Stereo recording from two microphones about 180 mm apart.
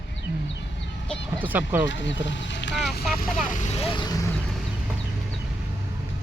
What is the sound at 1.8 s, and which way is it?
Speech, 90° left.